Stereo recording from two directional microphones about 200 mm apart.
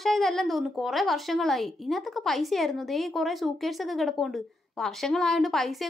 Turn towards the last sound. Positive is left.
turn(degrees=0)  # may be behind; listen again after turning